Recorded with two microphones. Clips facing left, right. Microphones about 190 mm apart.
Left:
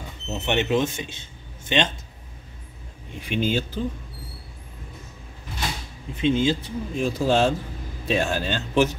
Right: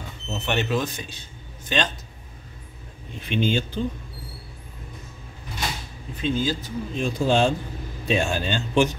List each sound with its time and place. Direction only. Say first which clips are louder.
0.3 s speech: left 2 dB; 20° left (ahead or behind)
3.2 s a man's voice: right 1 dB; 5° left (ahead or behind)
6.2 s speech: left 4 dB; 25° left (ahead or behind)
6.9 s a man's voice: left 1 dB; 5° left (ahead or behind)